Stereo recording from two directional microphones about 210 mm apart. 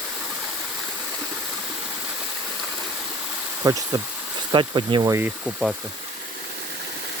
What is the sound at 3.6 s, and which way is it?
Speech, 20° right (ahead or behind).